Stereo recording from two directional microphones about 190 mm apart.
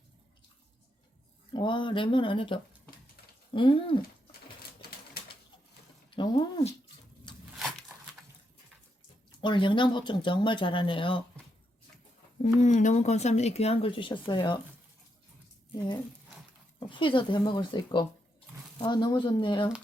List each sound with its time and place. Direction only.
1.5 s speech: 25° left (ahead or behind)
6.1 s a sound: 25° left (ahead or behind)
9.4 s speech: 25° left (ahead or behind)
12.4 s speech: 40° left (ahead or behind)
16.9 s speech: 25° left (ahead or behind)